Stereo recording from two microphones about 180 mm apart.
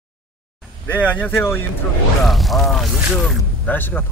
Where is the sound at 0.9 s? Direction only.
10° left (ahead or behind).